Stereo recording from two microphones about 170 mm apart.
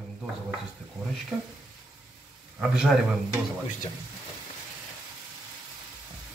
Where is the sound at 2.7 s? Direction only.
5° right (ahead or behind).